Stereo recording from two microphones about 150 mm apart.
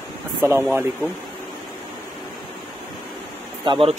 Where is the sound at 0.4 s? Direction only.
15° right (ahead or behind).